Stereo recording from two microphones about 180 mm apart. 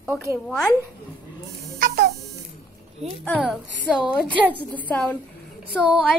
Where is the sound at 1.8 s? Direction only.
55° right (ahead or behind).